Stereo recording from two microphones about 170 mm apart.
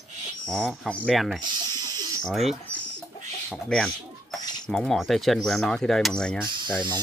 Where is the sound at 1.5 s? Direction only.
25° right (ahead or behind).